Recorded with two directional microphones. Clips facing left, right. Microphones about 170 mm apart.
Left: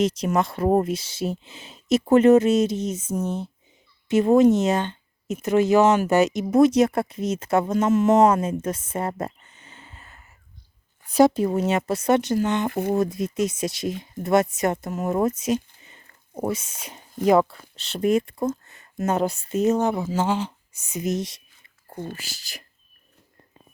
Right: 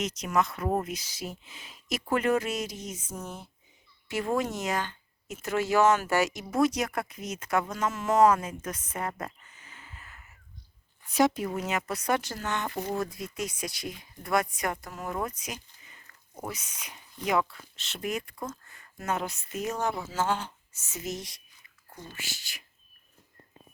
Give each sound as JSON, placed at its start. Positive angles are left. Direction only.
{"t": 0.0, "sound": "speech", "side_deg": 30}
{"t": 15.8, "sound": "a sound", "side_deg": 30}
{"t": 16.4, "sound": "speech", "side_deg": 25}
{"t": 16.9, "sound": "speech", "side_deg": 45}
{"t": 22.1, "sound": "speech", "side_deg": 35}